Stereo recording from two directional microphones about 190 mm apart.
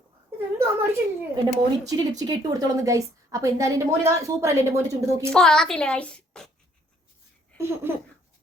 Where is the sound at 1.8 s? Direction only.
20° right (ahead or behind).